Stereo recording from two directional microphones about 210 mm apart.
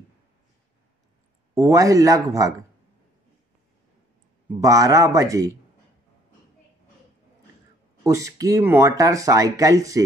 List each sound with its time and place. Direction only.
1.5 s speech: 15° right (ahead or behind)
4.6 s speech: 15° right (ahead or behind)
8.0 s speech: 15° right (ahead or behind)